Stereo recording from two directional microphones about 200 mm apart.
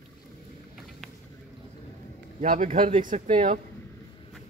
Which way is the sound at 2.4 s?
35° right (ahead or behind).